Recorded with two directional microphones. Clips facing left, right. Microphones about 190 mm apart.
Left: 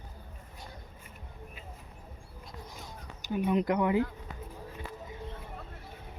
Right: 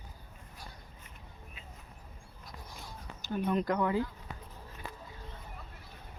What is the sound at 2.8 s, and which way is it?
Speech, 15° left (ahead or behind).